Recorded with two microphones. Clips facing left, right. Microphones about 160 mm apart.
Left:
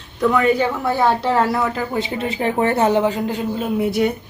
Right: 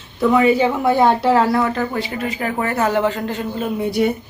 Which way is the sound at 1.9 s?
25° left (ahead or behind).